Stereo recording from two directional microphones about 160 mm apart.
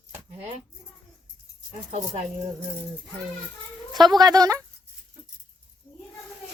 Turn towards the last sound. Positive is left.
turn(degrees=-25)  # may be behind; listen again after turning